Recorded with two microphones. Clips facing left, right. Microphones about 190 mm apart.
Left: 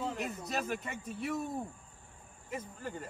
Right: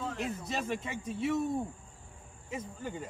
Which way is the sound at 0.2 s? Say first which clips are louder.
Right 1 dB; 5° left (ahead or behind).